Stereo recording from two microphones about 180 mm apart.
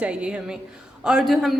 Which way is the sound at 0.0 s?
5° right (ahead or behind).